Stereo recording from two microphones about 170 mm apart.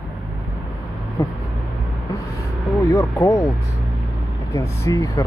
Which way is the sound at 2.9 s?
15° left (ahead or behind).